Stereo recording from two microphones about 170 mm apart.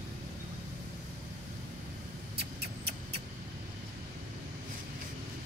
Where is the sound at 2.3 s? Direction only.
75° right (ahead or behind).